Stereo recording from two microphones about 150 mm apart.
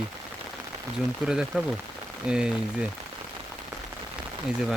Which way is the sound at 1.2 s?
5° right (ahead or behind).